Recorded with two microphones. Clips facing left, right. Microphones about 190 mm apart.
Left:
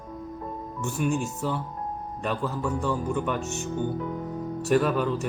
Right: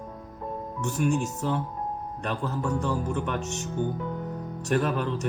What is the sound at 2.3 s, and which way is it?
Speech, 5° left (ahead or behind).